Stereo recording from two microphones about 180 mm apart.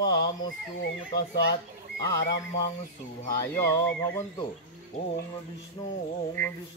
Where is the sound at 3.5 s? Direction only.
15° left (ahead or behind).